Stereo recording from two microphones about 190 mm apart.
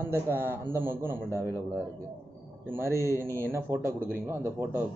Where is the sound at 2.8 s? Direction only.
15° right (ahead or behind).